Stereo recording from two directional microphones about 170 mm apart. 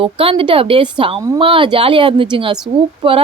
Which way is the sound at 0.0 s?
30° right (ahead or behind).